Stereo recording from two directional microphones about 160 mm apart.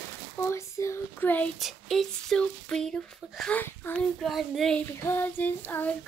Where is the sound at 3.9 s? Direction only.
Centre (ahead or behind).